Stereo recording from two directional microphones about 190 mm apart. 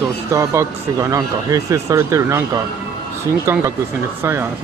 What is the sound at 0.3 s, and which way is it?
Speech, 15° right (ahead or behind).